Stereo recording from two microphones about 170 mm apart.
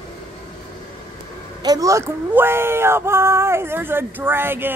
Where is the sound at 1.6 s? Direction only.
20° right (ahead or behind).